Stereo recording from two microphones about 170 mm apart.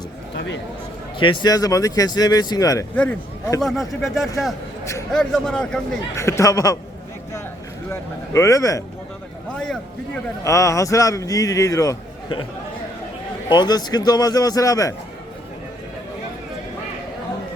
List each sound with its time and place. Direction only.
0.3 s a sound: 90° left
1.2 s a man's voice: 25° left (ahead or behind)
2.9 s speech: 10° left (ahead or behind)
6.1 s a man's voice: 15° left (ahead or behind)
7.9 s a man's voice: 20° left (ahead or behind)
10.4 s a man's voice: 20° left (ahead or behind)
13.5 s a man's voice: 25° left (ahead or behind)